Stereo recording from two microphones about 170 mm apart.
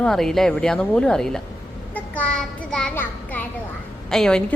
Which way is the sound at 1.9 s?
5° left (ahead or behind).